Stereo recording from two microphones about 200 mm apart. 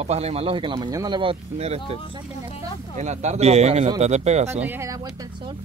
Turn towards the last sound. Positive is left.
turn(degrees=-20)  # may be behind; listen again after turning